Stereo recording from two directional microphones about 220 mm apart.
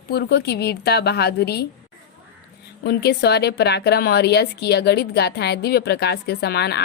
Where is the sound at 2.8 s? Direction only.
45° left (ahead or behind).